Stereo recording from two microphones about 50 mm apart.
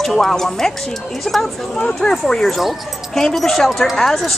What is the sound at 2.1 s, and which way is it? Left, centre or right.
A woman's voice, centre.